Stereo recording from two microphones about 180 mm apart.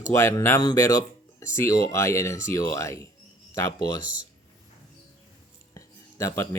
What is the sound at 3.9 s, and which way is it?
Speech, 90° right.